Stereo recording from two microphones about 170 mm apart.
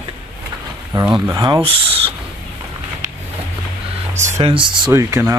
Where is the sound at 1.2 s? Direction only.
20° right (ahead or behind).